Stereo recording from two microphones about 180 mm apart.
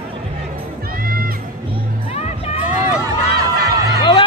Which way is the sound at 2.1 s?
35° left (ahead or behind).